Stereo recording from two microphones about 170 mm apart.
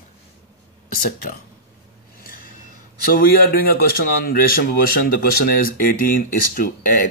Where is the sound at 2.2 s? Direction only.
55° left (ahead or behind).